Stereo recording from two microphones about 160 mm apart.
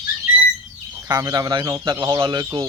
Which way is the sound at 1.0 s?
25° right (ahead or behind).